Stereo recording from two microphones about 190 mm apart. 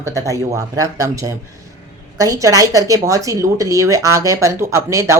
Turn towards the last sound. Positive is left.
turn(degrees=-15)  # may be behind; listen again after turning